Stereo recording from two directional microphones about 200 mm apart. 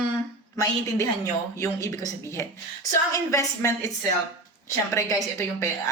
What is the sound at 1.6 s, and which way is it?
A woman's voice, 15° left (ahead or behind).